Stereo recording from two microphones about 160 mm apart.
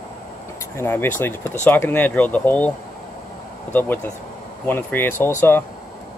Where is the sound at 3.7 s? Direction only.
10° left (ahead or behind).